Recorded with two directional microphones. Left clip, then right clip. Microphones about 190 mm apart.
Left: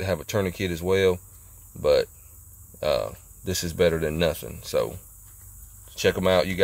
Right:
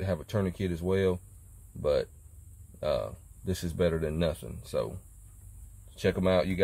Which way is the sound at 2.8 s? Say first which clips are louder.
Left 6 dB; 20° left (ahead or behind).